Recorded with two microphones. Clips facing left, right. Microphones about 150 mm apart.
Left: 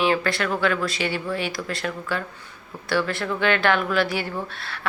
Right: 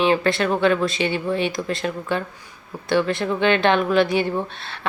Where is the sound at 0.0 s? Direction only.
20° right (ahead or behind).